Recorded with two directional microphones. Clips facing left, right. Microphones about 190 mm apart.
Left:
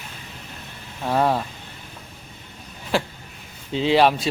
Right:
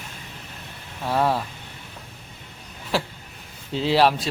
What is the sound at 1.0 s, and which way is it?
Speech, 15° left (ahead or behind).